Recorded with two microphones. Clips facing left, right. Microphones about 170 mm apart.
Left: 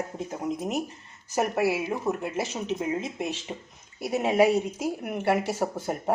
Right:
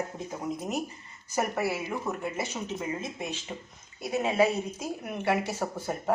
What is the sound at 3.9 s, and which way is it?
Speech, 10° left (ahead or behind).